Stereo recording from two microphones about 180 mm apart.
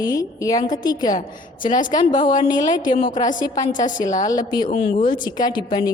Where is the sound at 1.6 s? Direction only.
45° left (ahead or behind).